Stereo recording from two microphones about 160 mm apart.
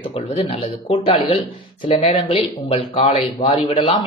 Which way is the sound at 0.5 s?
40° left (ahead or behind).